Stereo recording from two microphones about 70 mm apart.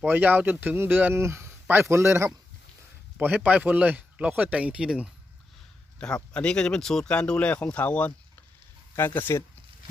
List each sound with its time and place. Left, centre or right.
0.0 s speech: right
1.1 s a man's voice: right
3.2 s speech: right
6.0 s speech: centre
9.0 s speech: left